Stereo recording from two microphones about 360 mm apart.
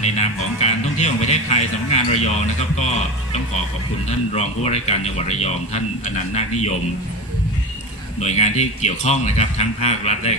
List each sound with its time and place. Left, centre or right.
0.6 s speech: centre
4.4 s speech: centre
8.2 s speech: centre